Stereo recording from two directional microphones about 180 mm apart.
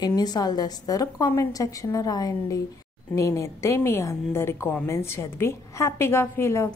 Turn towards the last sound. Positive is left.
turn(degrees=15)  # may be behind; listen again after turning